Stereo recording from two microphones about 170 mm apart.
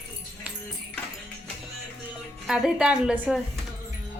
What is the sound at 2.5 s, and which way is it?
Speech, 5° right (ahead or behind).